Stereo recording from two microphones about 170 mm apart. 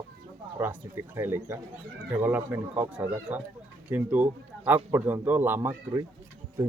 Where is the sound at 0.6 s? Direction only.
15° right (ahead or behind).